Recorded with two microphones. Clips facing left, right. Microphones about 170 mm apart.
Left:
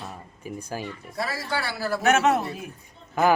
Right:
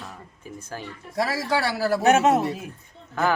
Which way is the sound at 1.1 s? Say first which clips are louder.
Right 5 dB; 90° right.